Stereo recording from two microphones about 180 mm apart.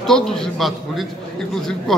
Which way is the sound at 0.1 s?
5° left (ahead or behind).